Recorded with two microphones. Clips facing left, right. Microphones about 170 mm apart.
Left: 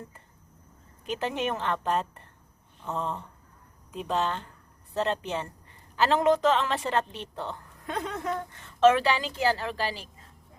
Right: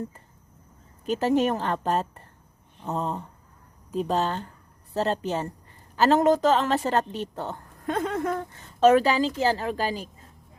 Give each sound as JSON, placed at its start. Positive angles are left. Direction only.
{"t": 1.0, "sound": "a woman's voice", "side_deg": -40}